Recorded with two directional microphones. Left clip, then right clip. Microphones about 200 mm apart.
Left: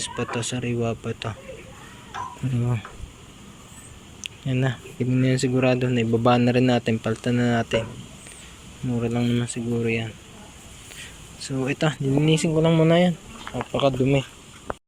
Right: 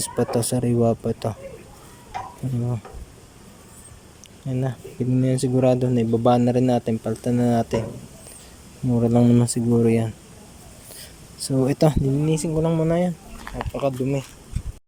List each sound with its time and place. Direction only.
0.0 s speech: 25° right (ahead or behind)
2.6 s speech: 10° right (ahead or behind)
4.2 s speech: 10° right (ahead or behind)
8.9 s speech: 20° right (ahead or behind)
11.4 s speech: 20° right (ahead or behind)
12.2 s speech: 10° right (ahead or behind)